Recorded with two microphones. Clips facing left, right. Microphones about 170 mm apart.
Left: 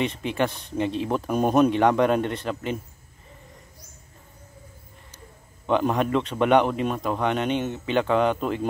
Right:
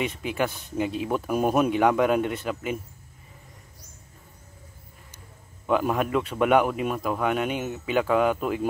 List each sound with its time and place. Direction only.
0.0 s speech: 5° right (ahead or behind)
5.7 s speech: 5° right (ahead or behind)